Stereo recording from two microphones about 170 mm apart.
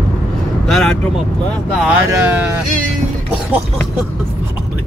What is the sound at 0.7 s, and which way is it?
Vehicle, centre (ahead or behind).